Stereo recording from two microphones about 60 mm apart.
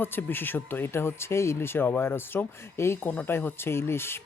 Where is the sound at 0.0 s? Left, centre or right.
Left.